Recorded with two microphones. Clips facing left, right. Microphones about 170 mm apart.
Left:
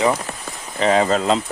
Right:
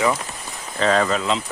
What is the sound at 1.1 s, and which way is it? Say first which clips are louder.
Speech: left 4 dB; 40° left (ahead or behind).